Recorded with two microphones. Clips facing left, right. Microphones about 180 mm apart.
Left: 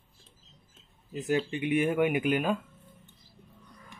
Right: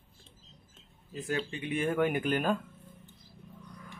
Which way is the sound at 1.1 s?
20° left (ahead or behind).